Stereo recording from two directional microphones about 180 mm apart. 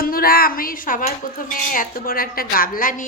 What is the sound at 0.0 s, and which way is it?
Speech, 55° left (ahead or behind).